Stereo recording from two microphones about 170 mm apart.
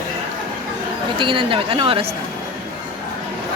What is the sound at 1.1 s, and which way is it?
Speech, 30° right (ahead or behind).